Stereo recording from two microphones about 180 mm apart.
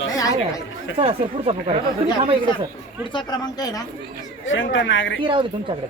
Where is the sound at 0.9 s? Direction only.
35° right (ahead or behind).